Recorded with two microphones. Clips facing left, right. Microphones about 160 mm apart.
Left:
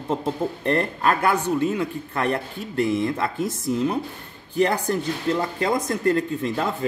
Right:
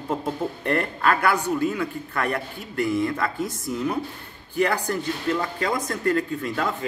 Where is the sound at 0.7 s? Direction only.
25° left (ahead or behind).